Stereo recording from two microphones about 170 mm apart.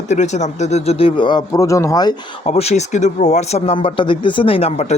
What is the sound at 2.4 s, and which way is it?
Speech, 35° left (ahead or behind).